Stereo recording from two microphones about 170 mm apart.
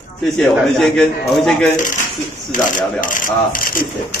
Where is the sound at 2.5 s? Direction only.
50° left (ahead or behind).